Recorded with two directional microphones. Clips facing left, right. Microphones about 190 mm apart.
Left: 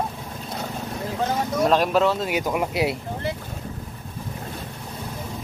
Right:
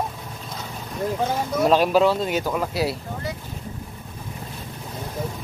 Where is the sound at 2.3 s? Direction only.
15° left (ahead or behind).